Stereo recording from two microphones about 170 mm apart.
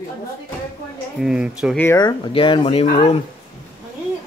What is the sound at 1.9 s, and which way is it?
Speech, 30° left (ahead or behind).